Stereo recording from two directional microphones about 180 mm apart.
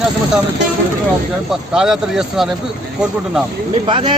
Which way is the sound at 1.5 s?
Centre (ahead or behind).